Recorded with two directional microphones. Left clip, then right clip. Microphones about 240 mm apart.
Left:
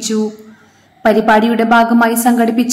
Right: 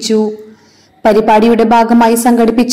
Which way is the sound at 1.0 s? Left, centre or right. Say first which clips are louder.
Right 3 dB; centre.